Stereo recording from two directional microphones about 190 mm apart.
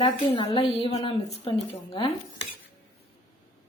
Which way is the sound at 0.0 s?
25° left (ahead or behind).